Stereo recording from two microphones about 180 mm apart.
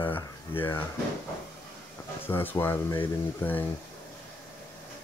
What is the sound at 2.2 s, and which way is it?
Speech, 10° left (ahead or behind).